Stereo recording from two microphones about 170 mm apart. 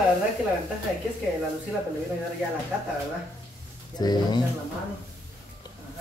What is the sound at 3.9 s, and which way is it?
Speech, 25° left (ahead or behind).